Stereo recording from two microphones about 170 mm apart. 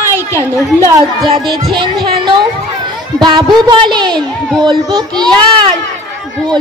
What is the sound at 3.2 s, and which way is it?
Speech, 25° right (ahead or behind).